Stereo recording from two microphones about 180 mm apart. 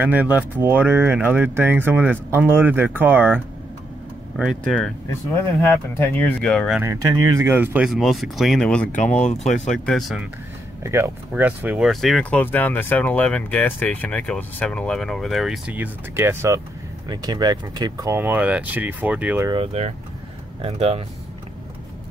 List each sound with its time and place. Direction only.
0.0 s speech: 10° right (ahead or behind)
4.4 s speech: centre (ahead or behind)
6.8 s speech: 20° right (ahead or behind); by 8.8 s 5° left (ahead or behind)
9.2 s speech: 40° left (ahead or behind)
9.7 s speech: centre (ahead or behind)
10.8 s speech: 15° right (ahead or behind)
19.5 s speech: 30° right (ahead or behind)